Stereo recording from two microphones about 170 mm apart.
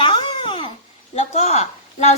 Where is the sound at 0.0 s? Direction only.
30° left (ahead or behind).